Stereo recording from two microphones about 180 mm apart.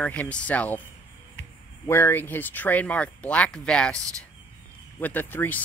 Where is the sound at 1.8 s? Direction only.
15° left (ahead or behind).